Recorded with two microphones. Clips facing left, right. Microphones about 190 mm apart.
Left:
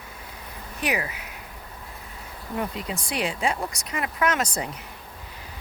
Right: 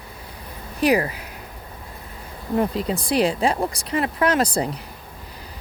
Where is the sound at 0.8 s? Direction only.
35° right (ahead or behind).